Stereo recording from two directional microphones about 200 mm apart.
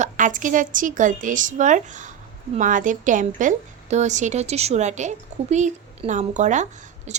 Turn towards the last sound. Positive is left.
turn(degrees=-35)  # may be behind; listen again after turning